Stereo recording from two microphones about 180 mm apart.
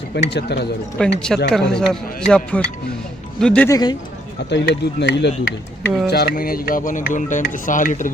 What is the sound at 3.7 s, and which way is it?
Speech, 20° left (ahead or behind).